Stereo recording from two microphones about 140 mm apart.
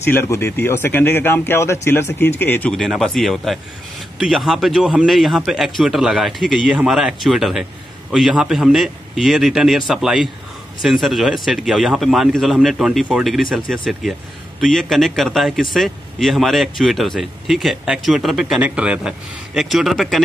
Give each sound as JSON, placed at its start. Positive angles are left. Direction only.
{"t": 0.0, "sound": "speech", "side_deg": 15}
{"t": 2.8, "sound": "a man's voice", "side_deg": 0}